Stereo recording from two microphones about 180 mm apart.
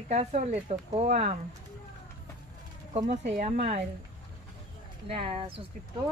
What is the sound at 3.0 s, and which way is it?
Speech, 40° right (ahead or behind).